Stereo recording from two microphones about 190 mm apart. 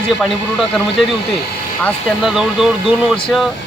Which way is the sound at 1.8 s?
Centre (ahead or behind).